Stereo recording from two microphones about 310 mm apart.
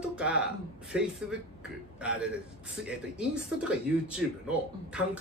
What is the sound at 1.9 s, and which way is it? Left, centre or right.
Speech, centre.